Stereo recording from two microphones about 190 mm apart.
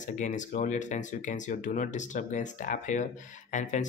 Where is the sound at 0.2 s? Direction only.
40° left (ahead or behind).